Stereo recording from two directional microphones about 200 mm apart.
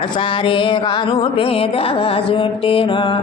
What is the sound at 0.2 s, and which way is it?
Music, 25° left (ahead or behind).